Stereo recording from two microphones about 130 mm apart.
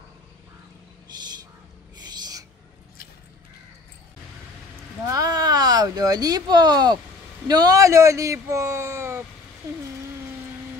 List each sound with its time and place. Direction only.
5.1 s speech: 30° right (ahead or behind)